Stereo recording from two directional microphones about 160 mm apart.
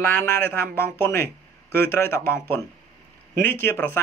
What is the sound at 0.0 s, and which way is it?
Speech, 10° left (ahead or behind).